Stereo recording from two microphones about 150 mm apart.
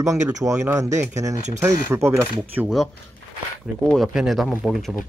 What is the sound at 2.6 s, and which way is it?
Speech, 5° right (ahead or behind).